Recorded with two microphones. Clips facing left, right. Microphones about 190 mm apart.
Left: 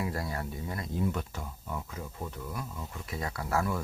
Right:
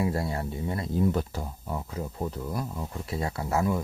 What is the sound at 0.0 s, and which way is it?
Speech, 25° right (ahead or behind).